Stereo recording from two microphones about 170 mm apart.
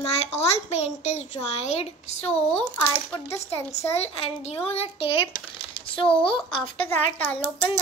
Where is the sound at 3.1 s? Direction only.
15° left (ahead or behind).